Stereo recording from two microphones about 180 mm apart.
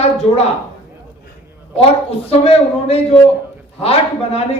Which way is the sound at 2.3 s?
35° left (ahead or behind).